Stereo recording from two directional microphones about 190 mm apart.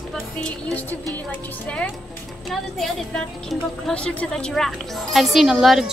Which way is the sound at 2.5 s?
Centre (ahead or behind).